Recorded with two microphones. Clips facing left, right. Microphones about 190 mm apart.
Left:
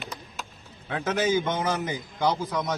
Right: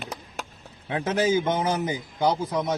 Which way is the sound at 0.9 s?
30° right (ahead or behind).